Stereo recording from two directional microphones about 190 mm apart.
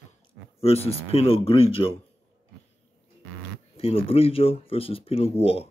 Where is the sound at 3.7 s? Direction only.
30° left (ahead or behind).